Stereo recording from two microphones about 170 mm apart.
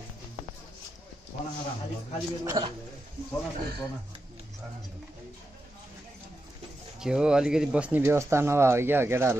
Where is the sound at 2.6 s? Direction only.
20° right (ahead or behind).